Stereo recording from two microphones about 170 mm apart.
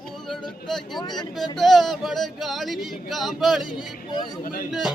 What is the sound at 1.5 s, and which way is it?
Speech, centre (ahead or behind).